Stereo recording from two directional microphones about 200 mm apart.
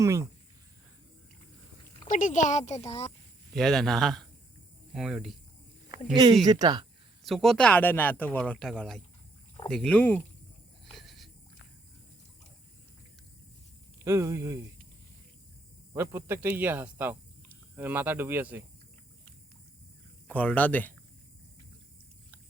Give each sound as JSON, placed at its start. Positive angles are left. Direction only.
{"t": 0.0, "sound": "speech", "side_deg": -15}
{"t": 2.0, "sound": "speech", "side_deg": 40}
{"t": 3.5, "sound": "speech", "side_deg": 0}
{"t": 6.4, "sound": "speech", "side_deg": -20}
{"t": 7.3, "sound": "speech", "side_deg": 0}
{"t": 10.8, "sound": "frog", "side_deg": 0}
{"t": 14.0, "sound": "speech", "side_deg": -15}
{"t": 15.9, "sound": "speech", "side_deg": -10}
{"t": 20.2, "sound": "speech", "side_deg": 5}